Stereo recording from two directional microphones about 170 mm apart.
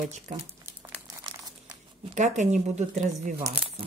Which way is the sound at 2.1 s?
45° right (ahead or behind).